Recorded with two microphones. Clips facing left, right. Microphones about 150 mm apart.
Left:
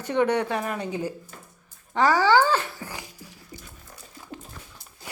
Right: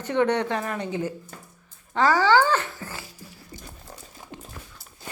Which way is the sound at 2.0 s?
15° left (ahead or behind).